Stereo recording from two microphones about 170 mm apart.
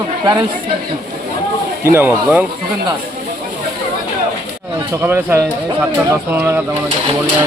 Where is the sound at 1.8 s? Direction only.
15° right (ahead or behind).